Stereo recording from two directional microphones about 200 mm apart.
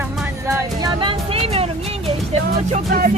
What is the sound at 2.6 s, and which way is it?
Speech, 40° right (ahead or behind).